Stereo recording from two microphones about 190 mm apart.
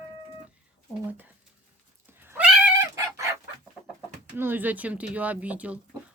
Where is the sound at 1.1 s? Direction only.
10° right (ahead or behind).